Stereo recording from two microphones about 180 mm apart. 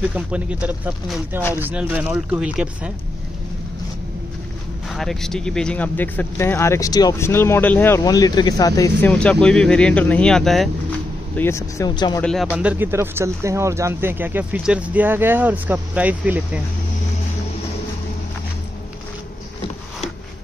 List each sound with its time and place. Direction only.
0.0 s speech: 5° right (ahead or behind)
4.8 s speech: centre (ahead or behind); by 9.1 s 20° left (ahead or behind)
9.1 s speech: 5° left (ahead or behind)
11.3 s speech: 15° left (ahead or behind)
12.2 s speech: 5° left (ahead or behind)